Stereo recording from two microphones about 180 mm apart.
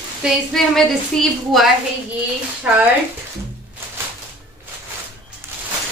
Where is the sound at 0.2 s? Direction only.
Centre (ahead or behind).